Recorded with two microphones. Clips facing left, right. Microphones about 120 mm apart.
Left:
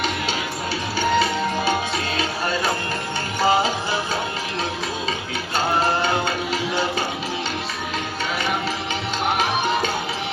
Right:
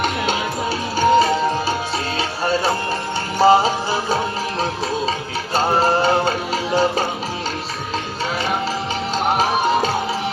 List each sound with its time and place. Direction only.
0.9 s music: 40° right (ahead or behind)
5.5 s music: 35° right (ahead or behind)
9.1 s music: 35° right (ahead or behind)